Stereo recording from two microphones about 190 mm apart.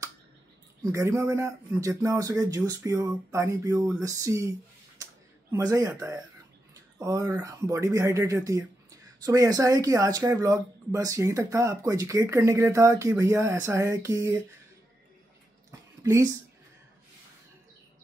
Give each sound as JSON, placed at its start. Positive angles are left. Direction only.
{"t": 0.8, "sound": "speech", "side_deg": -15}
{"t": 5.0, "sound": "a sound", "side_deg": -20}
{"t": 5.5, "sound": "speech", "side_deg": -15}
{"t": 16.0, "sound": "speech", "side_deg": -15}